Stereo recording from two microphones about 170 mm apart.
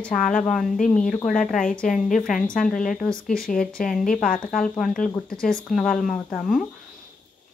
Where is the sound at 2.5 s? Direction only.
Centre (ahead or behind).